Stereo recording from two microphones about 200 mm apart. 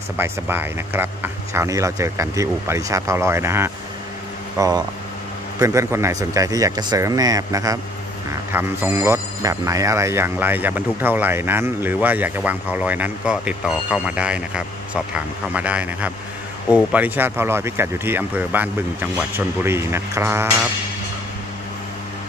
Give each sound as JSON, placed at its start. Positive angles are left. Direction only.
{"t": 0.2, "sound": "speech", "side_deg": -10}